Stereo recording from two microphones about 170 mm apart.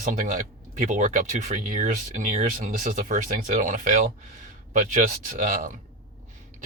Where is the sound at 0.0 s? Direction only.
50° right (ahead or behind).